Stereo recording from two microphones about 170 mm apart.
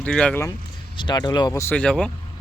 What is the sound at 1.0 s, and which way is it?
Speech, 25° left (ahead or behind).